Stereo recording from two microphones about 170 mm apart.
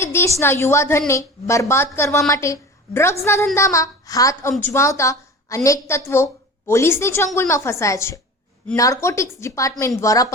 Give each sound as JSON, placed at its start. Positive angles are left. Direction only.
{"t": 0.0, "sound": "a woman's voice", "side_deg": 15}